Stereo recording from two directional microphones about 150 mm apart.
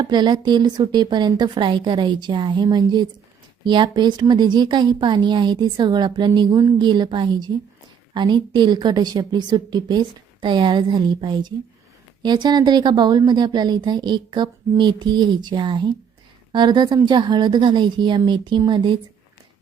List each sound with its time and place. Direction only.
0.0 s a woman's voice: 30° right (ahead or behind)